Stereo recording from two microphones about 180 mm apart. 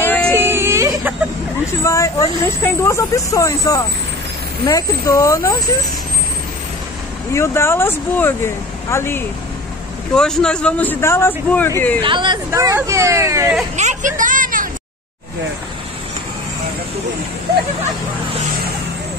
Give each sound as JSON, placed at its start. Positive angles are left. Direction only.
{"t": 0.0, "sound": "baby cry", "side_deg": 10}
{"t": 0.3, "sound": "whimper", "side_deg": -10}
{"t": 1.9, "sound": "speech", "side_deg": 15}
{"t": 7.3, "sound": "speech", "side_deg": 15}
{"t": 12.0, "sound": "speech", "side_deg": -25}
{"t": 12.4, "sound": "speech", "side_deg": -15}
{"t": 13.7, "sound": "a woman's voice", "side_deg": -45}